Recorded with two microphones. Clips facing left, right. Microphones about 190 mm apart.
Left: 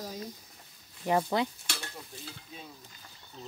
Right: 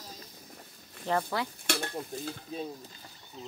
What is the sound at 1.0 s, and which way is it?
Speech, 20° left (ahead or behind).